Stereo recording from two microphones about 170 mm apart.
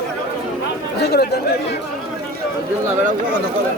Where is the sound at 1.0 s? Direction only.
70° left (ahead or behind).